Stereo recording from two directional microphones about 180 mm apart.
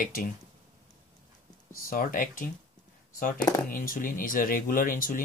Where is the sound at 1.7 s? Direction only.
55° left (ahead or behind).